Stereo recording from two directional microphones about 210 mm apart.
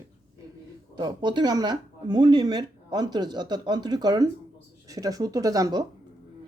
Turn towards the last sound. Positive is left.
turn(degrees=-15)  # may be behind; listen again after turning